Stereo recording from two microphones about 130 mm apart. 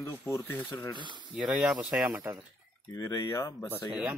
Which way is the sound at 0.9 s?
35° right (ahead or behind).